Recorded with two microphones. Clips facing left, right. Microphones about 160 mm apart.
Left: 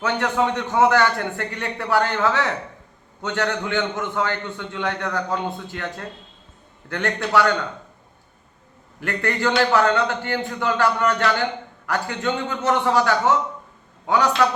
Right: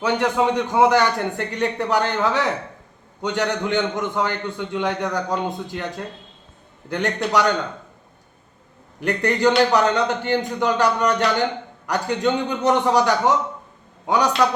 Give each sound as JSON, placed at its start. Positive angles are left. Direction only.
{"t": 0.0, "sound": "a man's voice", "side_deg": -10}
{"t": 6.9, "sound": "a man's voice", "side_deg": -15}
{"t": 9.0, "sound": "a man's voice", "side_deg": -15}